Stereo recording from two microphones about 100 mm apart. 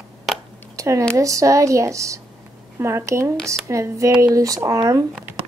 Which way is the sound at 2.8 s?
25° right (ahead or behind).